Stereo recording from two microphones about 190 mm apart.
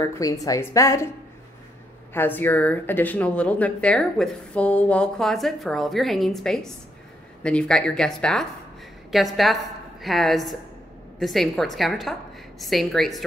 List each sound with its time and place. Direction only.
0.0 s speech: 15° left (ahead or behind)
2.1 s speech: 10° left (ahead or behind)